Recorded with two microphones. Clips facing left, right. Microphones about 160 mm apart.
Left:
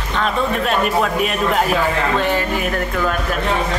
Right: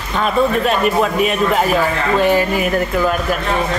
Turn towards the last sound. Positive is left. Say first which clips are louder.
# right 4 dB
turn(degrees=-10)  # may be behind; listen again after turning